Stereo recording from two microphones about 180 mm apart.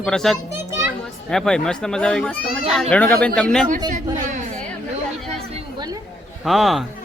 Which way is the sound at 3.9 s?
45° right (ahead or behind).